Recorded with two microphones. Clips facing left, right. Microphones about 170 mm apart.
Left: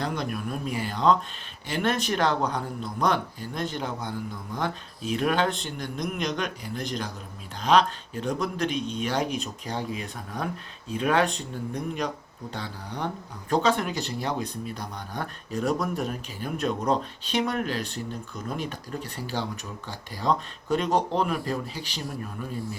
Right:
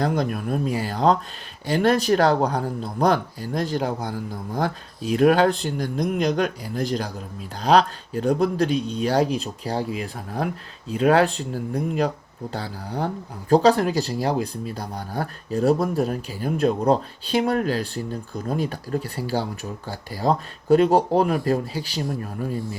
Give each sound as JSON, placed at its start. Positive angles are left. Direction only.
{"t": 0.0, "sound": "speech", "side_deg": -35}